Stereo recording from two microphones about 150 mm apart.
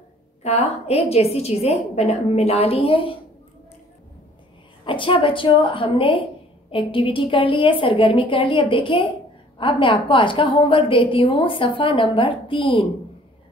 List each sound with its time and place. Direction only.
0.4 s a woman's voice: 45° left (ahead or behind)
4.8 s a woman's voice: 35° left (ahead or behind)